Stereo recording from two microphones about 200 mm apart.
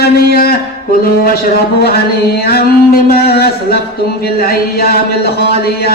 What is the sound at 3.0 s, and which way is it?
Mantra, 50° left (ahead or behind).